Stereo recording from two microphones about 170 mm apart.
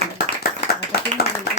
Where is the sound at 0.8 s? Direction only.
70° left (ahead or behind).